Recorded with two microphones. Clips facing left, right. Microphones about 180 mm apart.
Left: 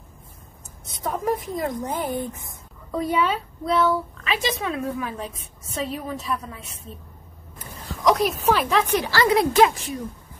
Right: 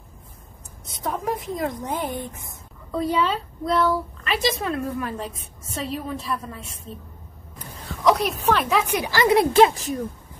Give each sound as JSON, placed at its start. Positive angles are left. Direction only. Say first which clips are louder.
{"t": 1.0, "sound": "speech", "louder": "left 2 dB", "side_deg": 0}
{"t": 8.0, "sound": "a sound", "louder": "even", "side_deg": 0}
{"t": 8.5, "sound": "a woman's voice", "louder": "even", "side_deg": 0}